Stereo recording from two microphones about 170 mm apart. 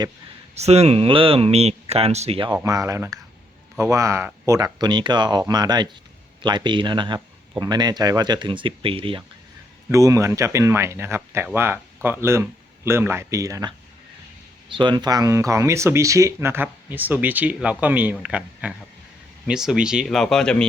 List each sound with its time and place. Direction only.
0.5 s speech: 40° right (ahead or behind)
2.6 s speech: 20° right (ahead or behind)
9.9 s speech: 20° right (ahead or behind); by 20.7 s 5° left (ahead or behind)